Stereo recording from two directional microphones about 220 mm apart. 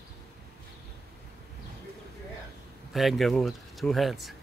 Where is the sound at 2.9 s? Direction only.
Centre (ahead or behind).